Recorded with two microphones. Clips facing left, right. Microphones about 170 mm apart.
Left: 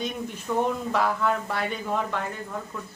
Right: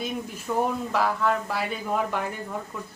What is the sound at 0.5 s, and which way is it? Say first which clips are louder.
A woman's voice: even; 5° right (ahead or behind).